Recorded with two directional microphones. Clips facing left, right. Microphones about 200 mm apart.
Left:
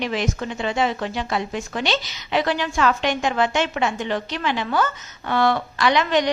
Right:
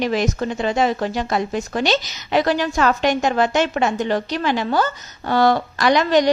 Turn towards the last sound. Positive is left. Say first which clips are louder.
# right 4 dB
turn(degrees=-40)  # may be behind; listen again after turning